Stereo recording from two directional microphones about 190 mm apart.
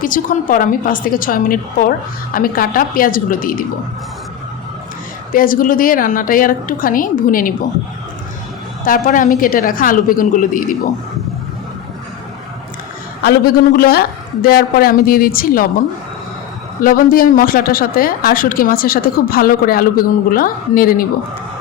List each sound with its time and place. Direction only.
0.0 s speech: 45° left (ahead or behind)
5.3 s speech: 45° left (ahead or behind)
8.8 s speech: 45° left (ahead or behind)
13.2 s speech: 50° left (ahead or behind)
16.8 s speech: 50° left (ahead or behind)